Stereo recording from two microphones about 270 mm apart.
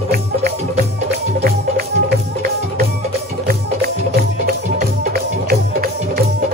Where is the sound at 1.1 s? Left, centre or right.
Right.